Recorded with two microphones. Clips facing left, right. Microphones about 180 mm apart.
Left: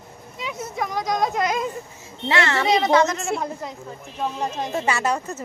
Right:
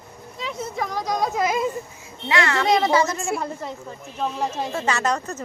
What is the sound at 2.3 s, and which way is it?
Speech, 25° left (ahead or behind).